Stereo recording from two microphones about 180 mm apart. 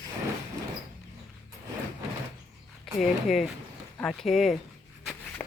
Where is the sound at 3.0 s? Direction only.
Centre (ahead or behind).